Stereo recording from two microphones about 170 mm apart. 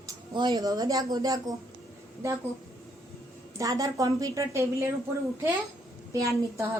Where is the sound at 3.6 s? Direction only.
20° right (ahead or behind).